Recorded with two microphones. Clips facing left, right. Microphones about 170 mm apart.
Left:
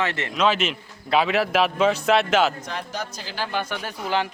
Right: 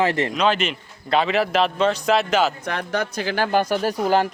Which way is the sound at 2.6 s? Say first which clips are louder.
Right 6 dB; 60° right (ahead or behind).